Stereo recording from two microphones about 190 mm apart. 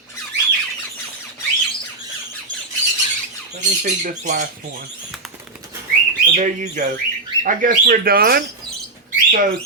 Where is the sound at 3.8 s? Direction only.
45° right (ahead or behind).